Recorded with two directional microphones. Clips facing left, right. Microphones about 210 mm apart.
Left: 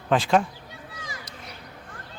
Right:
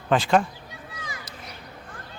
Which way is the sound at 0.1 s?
Centre (ahead or behind).